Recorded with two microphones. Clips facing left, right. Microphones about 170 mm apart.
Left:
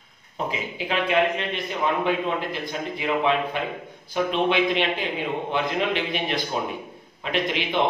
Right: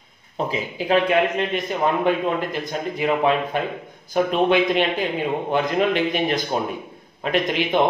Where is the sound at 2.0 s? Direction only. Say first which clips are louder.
Right 4 dB; 45° right (ahead or behind).